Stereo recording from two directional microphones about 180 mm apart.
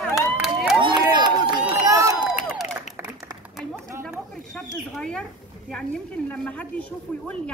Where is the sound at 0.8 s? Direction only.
25° right (ahead or behind).